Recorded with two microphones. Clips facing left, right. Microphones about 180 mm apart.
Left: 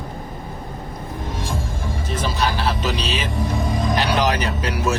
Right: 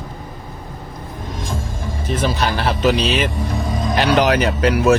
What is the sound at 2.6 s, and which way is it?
Speech, 60° right (ahead or behind).